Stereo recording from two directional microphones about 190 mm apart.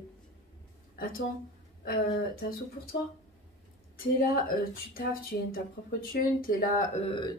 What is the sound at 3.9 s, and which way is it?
Speech, 50° left (ahead or behind).